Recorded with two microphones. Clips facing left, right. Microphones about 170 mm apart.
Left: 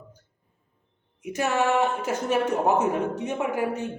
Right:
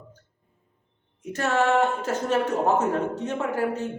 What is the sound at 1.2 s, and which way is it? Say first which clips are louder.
A man's voice: right 1 dB; 10° left (ahead or behind).